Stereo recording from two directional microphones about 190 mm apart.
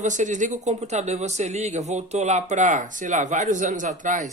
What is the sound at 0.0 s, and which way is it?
Speech, 40° right (ahead or behind).